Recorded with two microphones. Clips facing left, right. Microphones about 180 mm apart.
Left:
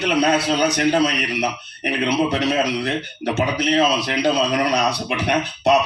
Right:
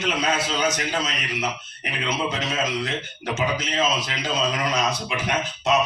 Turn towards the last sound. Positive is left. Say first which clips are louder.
# left 5 dB
turn(degrees=65)  # may be behind; listen again after turning